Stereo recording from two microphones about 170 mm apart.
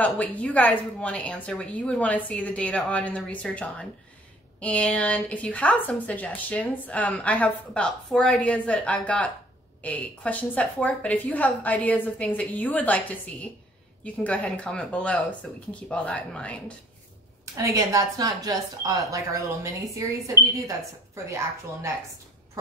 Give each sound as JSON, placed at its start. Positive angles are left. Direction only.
{"t": 0.0, "sound": "a woman's voice", "side_deg": 10}
{"t": 17.6, "sound": "a woman's voice", "side_deg": -20}